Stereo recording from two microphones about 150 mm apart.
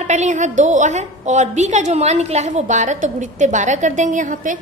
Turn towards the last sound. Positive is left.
turn(degrees=-60)  # may be behind; listen again after turning